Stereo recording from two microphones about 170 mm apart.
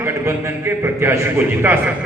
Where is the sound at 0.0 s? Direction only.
15° right (ahead or behind).